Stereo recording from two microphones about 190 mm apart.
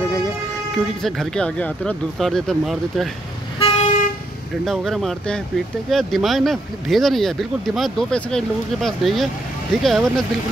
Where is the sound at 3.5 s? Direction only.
30° left (ahead or behind).